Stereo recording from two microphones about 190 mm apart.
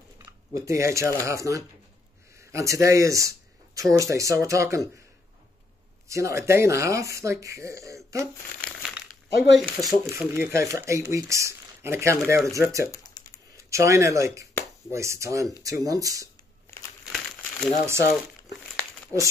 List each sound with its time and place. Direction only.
0.6 s speech: 15° right (ahead or behind)
6.0 s speech: 15° right (ahead or behind)
8.6 s crumpling: centre (ahead or behind)
9.5 s speech: centre (ahead or behind)
10.0 s speech: 15° right (ahead or behind)
13.0 s typing: 20° left (ahead or behind)
13.7 s speech: 15° right (ahead or behind)
16.7 s crumpling: 10° left (ahead or behind)
17.0 s crumpling: centre (ahead or behind)